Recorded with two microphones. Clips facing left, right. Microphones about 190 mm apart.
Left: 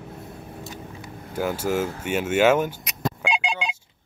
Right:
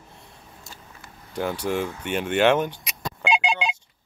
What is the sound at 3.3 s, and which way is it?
Telephone dialing, 65° right (ahead or behind).